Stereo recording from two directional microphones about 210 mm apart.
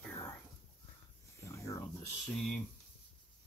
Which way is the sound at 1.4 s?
15° left (ahead or behind).